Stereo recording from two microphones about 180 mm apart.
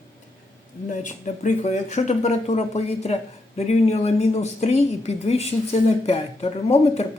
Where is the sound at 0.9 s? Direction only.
40° left (ahead or behind).